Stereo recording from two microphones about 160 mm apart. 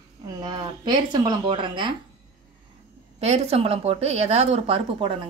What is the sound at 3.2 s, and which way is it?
Speech, 40° right (ahead or behind).